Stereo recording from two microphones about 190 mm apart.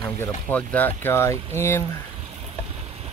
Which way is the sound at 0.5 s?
10° left (ahead or behind).